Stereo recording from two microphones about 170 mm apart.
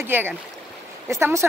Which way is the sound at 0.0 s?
10° right (ahead or behind).